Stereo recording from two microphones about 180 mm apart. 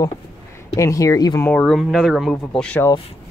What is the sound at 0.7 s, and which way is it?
Speech, 20° left (ahead or behind).